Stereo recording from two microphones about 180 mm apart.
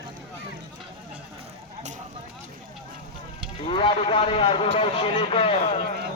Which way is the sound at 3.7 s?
30° left (ahead or behind).